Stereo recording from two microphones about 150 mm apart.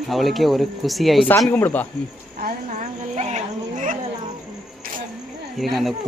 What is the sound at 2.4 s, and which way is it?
Speech, 55° right (ahead or behind).